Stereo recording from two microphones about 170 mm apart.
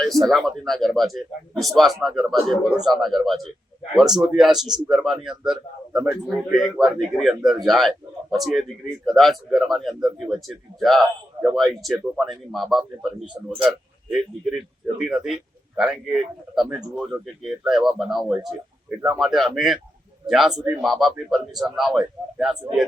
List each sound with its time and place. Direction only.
0.0 s a man's voice: centre (ahead or behind)
13.2 s speech: 25° right (ahead or behind)
13.6 s a man's voice: 5° right (ahead or behind)